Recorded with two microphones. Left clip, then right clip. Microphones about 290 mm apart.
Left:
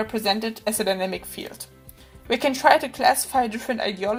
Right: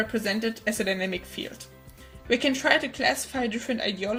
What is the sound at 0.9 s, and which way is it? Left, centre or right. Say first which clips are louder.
Speech: left 4 dB; left.